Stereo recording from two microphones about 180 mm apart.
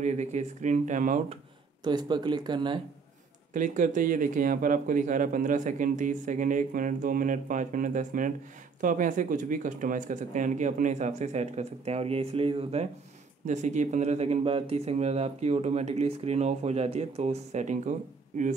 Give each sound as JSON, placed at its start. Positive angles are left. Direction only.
{"t": 0.0, "sound": "speech", "side_deg": -40}
{"t": 1.9, "sound": "speech", "side_deg": -25}
{"t": 3.5, "sound": "speech", "side_deg": -45}